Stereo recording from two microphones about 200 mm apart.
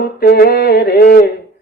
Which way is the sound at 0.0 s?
50° left (ahead or behind).